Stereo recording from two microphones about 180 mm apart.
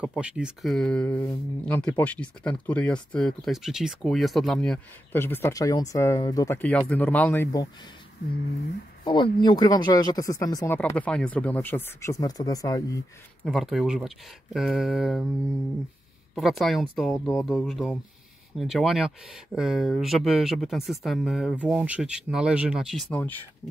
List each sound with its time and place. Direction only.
0.0 s speech: 5° right (ahead or behind)
9.0 s speech: 25° left (ahead or behind)
10.8 s speech: 10° left (ahead or behind)
13.4 s speech: centre (ahead or behind)
16.3 s speech: centre (ahead or behind)